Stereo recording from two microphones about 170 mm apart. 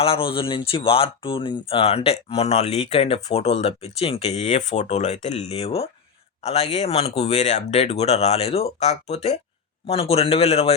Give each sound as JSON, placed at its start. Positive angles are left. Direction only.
{"t": 0.0, "sound": "speech", "side_deg": 30}